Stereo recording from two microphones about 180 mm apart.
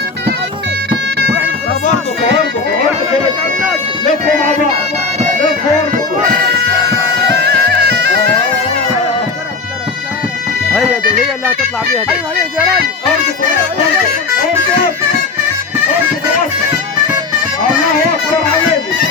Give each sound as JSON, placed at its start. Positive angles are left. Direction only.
{"t": 7.3, "sound": "music", "side_deg": -65}
{"t": 10.7, "sound": "bagpipes", "side_deg": -5}